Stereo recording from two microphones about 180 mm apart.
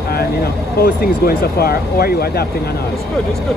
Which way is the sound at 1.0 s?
55° left (ahead or behind).